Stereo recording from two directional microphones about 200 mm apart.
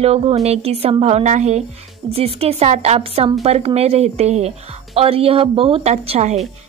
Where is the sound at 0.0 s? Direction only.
30° right (ahead or behind).